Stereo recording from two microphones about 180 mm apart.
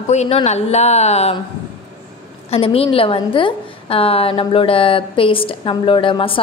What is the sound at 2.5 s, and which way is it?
A woman's voice, 35° left (ahead or behind).